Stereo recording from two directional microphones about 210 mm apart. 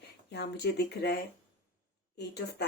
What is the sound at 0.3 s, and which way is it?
Speech, 50° left (ahead or behind).